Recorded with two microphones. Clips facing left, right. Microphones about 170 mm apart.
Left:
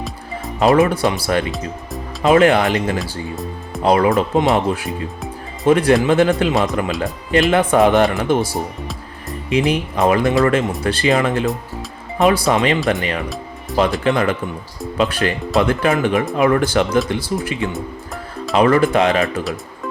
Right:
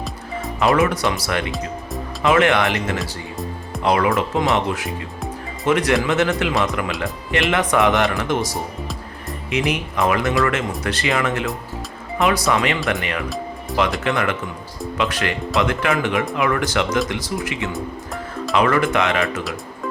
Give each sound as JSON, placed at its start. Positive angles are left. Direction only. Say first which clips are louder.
{"t": 0.6, "sound": "speech", "louder": "left 4 dB", "side_deg": 25}
{"t": 1.5, "sound": "speech", "louder": "left 1 dB", "side_deg": 0}
{"t": 2.2, "sound": "speech", "louder": "left 4 dB", "side_deg": 30}
{"t": 3.0, "sound": "music", "louder": "left 3 dB", "side_deg": 0}
{"t": 3.8, "sound": "speech", "louder": "left 4 dB", "side_deg": 30}